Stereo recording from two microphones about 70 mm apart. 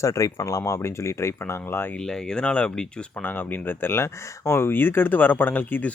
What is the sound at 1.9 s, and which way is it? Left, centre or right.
Speech, centre.